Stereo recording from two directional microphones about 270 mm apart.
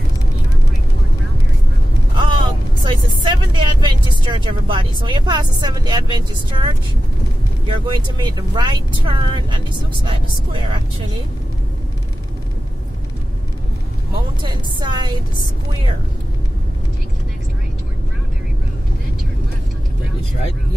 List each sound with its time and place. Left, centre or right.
2.1 s vehicle: centre
4.3 s speech: centre
14.4 s speech: centre